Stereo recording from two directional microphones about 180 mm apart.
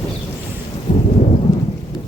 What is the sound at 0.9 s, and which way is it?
Thunder, 30° left (ahead or behind).